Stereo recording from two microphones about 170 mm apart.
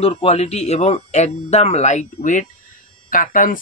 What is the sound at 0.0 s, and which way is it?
Speech, 35° left (ahead or behind).